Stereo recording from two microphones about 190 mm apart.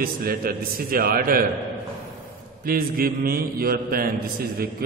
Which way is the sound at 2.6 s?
50° right (ahead or behind).